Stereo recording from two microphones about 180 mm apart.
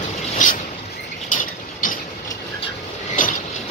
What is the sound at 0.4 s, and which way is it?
Mechanisms, 45° left (ahead or behind).